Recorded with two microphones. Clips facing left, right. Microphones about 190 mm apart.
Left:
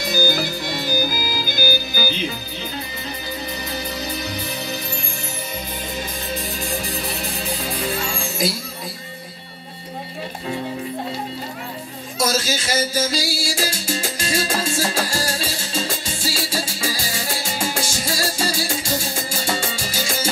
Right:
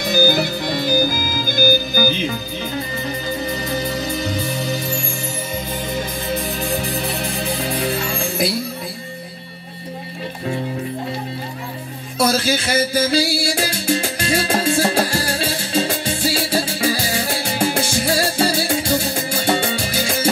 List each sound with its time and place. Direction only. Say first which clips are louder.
0.1 s music: right 5 dB; 55° right (ahead or behind)
3.8 s music: right 5 dB; 50° right (ahead or behind)
7.7 s music: right 3 dB; 60° right (ahead or behind)
12.2 s music: right 4 dB; 60° right (ahead or behind)
19.3 s salsa music: right 7 dB; 60° right (ahead or behind)